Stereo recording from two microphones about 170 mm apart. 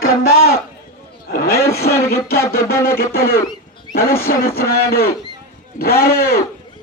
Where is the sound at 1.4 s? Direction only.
15° left (ahead or behind).